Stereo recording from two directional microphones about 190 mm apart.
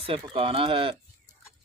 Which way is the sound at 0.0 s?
30° right (ahead or behind).